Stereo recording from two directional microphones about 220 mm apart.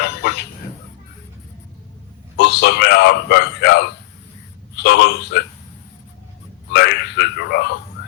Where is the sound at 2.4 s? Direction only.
50° left (ahead or behind).